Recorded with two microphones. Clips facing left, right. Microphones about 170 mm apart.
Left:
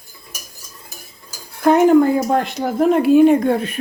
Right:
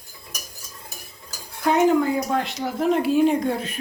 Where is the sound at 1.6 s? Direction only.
50° left (ahead or behind).